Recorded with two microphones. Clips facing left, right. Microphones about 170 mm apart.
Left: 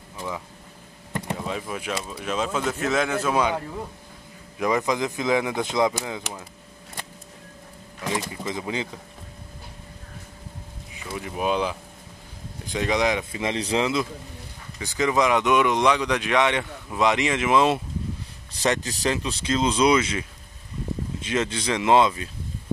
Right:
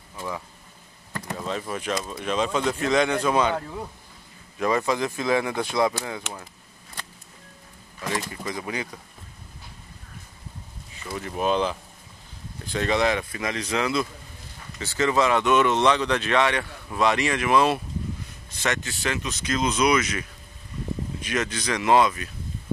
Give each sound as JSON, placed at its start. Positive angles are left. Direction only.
{"t": 1.1, "sound": "a sound", "side_deg": 20}
{"t": 1.4, "sound": "speech", "side_deg": 10}
{"t": 8.1, "sound": "speech", "side_deg": 20}
{"t": 11.1, "sound": "speech", "side_deg": 5}
{"t": 18.5, "sound": "speech", "side_deg": 35}